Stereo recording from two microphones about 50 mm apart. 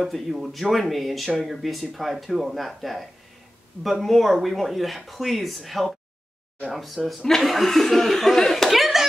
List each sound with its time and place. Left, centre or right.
0.0 s speech: centre